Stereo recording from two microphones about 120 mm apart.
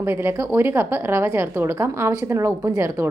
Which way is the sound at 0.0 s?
20° right (ahead or behind).